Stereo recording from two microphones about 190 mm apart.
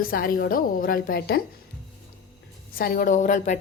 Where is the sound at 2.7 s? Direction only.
50° left (ahead or behind).